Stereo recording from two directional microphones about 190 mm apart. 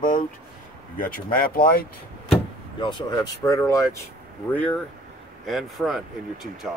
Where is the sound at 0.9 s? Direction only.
45° left (ahead or behind).